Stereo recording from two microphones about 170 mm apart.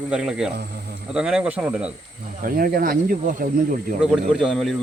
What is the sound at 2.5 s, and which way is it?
Speech, 60° right (ahead or behind).